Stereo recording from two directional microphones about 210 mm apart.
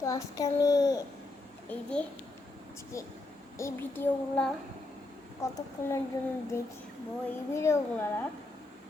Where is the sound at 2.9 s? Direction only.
15° left (ahead or behind).